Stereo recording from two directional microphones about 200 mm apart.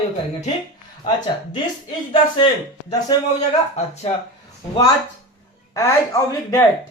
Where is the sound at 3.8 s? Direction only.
35° left (ahead or behind).